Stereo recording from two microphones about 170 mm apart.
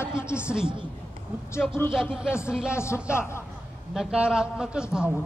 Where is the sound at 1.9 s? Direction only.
5° right (ahead or behind).